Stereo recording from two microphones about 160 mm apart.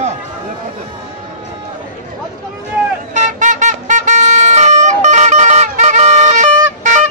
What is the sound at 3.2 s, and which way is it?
Music, 50° right (ahead or behind).